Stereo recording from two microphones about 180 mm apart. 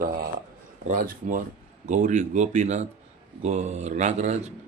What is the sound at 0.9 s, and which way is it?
Speech, 50° right (ahead or behind).